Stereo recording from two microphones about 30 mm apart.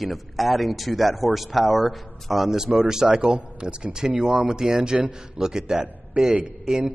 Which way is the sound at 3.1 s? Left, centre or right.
Right.